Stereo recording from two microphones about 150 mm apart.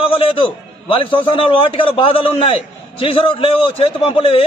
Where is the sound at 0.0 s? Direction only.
40° left (ahead or behind).